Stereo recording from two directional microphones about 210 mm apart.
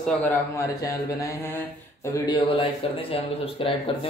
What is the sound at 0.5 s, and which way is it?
Speech, 15° left (ahead or behind).